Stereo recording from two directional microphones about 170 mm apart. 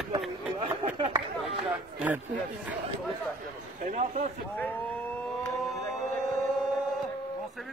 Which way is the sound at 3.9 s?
45° right (ahead or behind).